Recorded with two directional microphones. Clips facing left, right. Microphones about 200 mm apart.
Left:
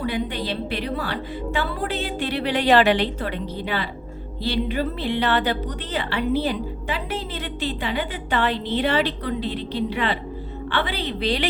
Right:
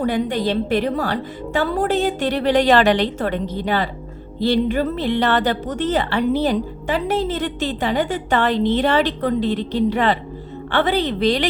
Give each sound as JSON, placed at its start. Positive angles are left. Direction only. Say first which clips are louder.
{"t": 0.0, "sound": "a woman's voice", "louder": "right 6 dB", "side_deg": -45}